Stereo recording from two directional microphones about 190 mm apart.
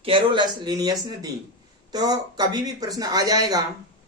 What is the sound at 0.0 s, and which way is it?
Speech, 25° right (ahead or behind).